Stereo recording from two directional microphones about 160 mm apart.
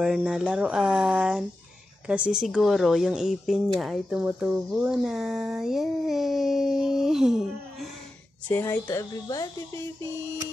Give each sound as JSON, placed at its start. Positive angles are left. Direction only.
{"t": 0.0, "sound": "speech", "side_deg": -5}
{"t": 8.5, "sound": "a woman's voice", "side_deg": 10}